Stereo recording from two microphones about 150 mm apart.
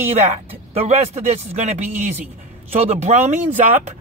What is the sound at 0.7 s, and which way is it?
A man's voice, 45° right (ahead or behind).